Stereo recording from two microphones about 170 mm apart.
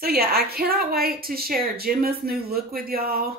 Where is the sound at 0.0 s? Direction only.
65° right (ahead or behind).